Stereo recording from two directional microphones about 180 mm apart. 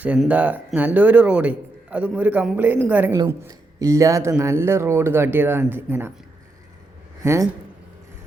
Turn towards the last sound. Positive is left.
turn(degrees=-15)  # may be behind; listen again after turning